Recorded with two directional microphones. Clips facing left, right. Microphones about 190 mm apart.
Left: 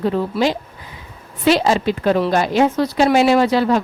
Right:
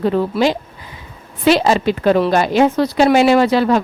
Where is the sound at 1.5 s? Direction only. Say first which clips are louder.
Right 2 dB; 70° right (ahead or behind).